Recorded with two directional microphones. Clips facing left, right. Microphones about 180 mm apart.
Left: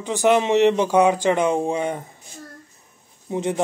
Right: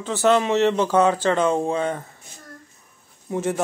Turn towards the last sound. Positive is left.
turn(degrees=20)  # may be behind; listen again after turning